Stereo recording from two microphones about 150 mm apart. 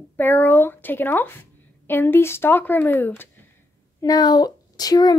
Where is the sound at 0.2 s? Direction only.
10° left (ahead or behind).